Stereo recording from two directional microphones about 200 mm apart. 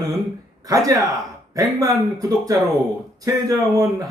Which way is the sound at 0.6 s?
15° right (ahead or behind).